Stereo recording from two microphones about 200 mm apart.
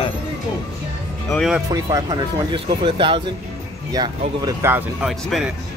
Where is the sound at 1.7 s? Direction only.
20° right (ahead or behind); by 5.5 s centre (ahead or behind).